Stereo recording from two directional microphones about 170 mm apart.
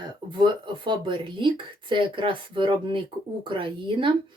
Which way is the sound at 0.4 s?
30° right (ahead or behind).